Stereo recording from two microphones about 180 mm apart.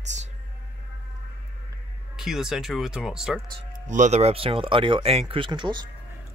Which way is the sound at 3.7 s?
45° right (ahead or behind).